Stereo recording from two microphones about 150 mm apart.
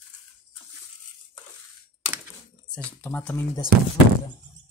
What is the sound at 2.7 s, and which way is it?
Speech, 10° left (ahead or behind).